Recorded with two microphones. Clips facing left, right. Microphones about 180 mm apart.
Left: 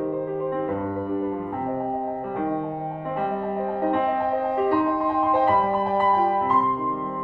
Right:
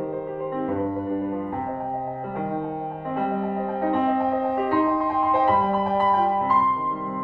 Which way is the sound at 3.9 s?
Centre (ahead or behind).